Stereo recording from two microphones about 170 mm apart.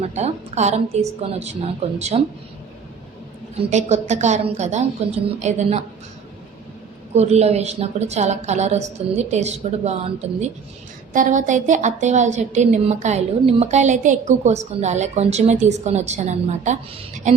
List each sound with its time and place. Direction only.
0.0 s a woman's voice: 40° right (ahead or behind)
3.5 s a woman's voice: 40° right (ahead or behind)
7.2 s a woman's voice: 40° right (ahead or behind)
11.1 s a woman's voice: 50° right (ahead or behind)